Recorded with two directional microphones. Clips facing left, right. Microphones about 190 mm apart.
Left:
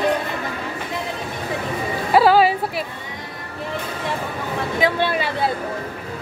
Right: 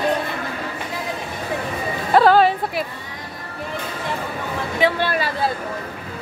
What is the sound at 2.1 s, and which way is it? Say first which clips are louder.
Speech: even; 5° left (ahead or behind).